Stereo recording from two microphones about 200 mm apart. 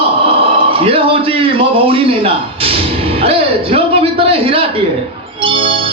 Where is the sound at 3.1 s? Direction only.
30° right (ahead or behind).